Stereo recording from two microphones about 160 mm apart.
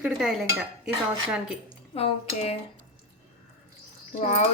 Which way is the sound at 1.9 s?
35° left (ahead or behind).